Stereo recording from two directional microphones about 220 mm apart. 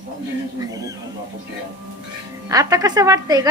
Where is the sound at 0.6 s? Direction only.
15° right (ahead or behind).